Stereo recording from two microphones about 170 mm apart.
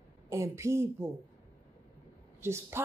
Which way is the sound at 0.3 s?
15° right (ahead or behind).